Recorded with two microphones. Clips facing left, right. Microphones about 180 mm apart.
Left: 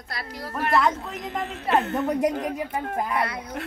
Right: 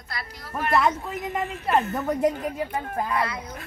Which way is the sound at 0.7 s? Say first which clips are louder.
Even; 5° right (ahead or behind).